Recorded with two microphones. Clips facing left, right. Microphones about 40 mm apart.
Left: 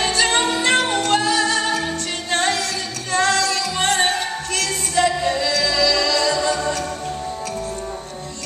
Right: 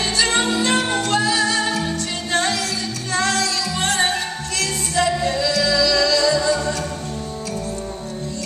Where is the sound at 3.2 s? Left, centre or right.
Left.